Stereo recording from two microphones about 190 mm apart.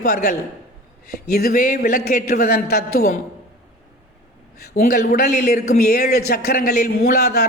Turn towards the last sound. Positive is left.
turn(degrees=55)  # may be behind; listen again after turning